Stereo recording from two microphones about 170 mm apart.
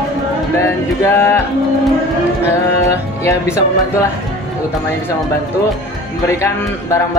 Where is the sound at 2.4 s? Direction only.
15° left (ahead or behind).